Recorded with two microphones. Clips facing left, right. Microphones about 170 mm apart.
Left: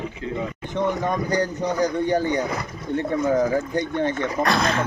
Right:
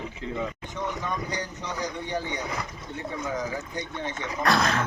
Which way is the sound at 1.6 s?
35° left (ahead or behind).